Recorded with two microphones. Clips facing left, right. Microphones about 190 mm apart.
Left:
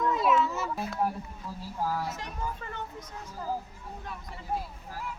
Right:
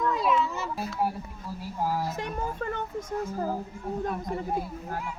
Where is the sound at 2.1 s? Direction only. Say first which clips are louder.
Right 5 dB; 55° right (ahead or behind).